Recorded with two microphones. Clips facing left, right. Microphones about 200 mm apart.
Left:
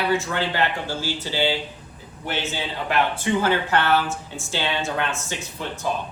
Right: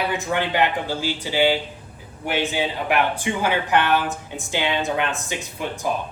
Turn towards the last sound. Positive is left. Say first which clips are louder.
# right 2 dB
turn(degrees=-15)  # may be behind; listen again after turning